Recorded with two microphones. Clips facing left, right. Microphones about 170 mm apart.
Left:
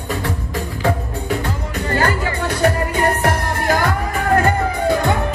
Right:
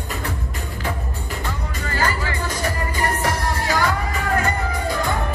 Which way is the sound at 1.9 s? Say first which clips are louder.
Left 5 dB; 60° left (ahead or behind).